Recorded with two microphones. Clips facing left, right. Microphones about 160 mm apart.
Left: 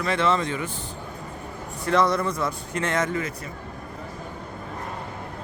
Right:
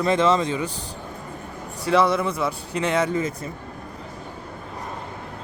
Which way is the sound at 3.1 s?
25° right (ahead or behind).